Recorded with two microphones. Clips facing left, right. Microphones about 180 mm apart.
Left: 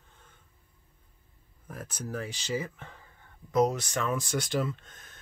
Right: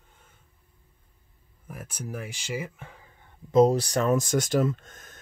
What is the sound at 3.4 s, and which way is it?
Speech, 25° right (ahead or behind).